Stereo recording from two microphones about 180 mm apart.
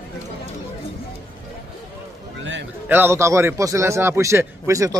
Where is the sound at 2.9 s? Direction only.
10° right (ahead or behind).